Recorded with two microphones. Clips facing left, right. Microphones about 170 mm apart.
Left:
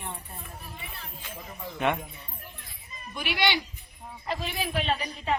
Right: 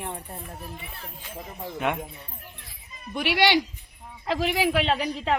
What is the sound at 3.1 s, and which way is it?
Speech, 75° right (ahead or behind).